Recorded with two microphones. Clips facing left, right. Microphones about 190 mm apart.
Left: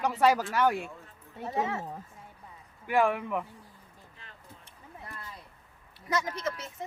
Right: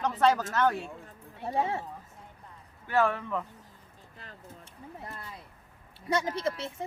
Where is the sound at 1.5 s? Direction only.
30° right (ahead or behind).